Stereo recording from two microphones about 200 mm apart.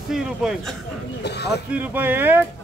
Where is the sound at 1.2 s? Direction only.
55° left (ahead or behind).